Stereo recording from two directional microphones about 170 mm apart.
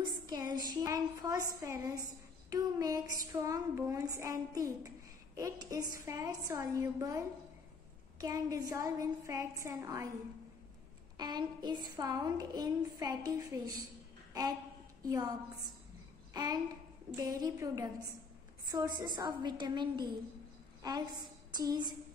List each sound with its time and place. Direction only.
0.0 s a woman's voice: 25° right (ahead or behind)
11.1 s a woman's voice: 25° right (ahead or behind)
15.0 s a woman's voice: 20° right (ahead or behind)